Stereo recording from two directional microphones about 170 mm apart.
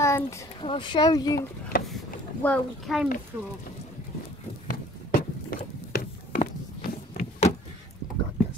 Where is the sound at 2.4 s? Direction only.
10° left (ahead or behind).